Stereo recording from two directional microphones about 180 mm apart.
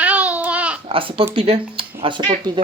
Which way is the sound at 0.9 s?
30° right (ahead or behind).